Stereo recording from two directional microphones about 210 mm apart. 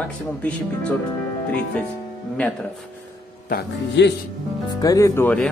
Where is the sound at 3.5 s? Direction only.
50° left (ahead or behind).